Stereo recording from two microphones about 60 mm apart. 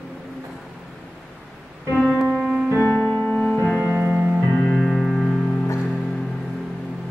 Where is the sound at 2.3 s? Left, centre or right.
Centre.